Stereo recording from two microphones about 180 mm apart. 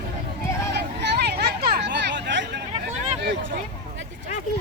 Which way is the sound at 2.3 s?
70° right (ahead or behind).